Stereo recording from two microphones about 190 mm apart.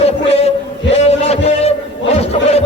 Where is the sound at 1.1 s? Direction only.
35° left (ahead or behind).